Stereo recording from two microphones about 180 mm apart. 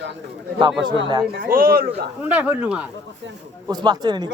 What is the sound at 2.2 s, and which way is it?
Speech, 10° right (ahead or behind).